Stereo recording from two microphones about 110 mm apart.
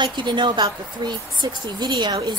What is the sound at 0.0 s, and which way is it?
A woman's voice, 45° right (ahead or behind).